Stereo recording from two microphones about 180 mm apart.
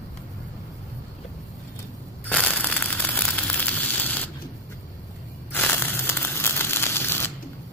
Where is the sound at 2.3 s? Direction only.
5° left (ahead or behind).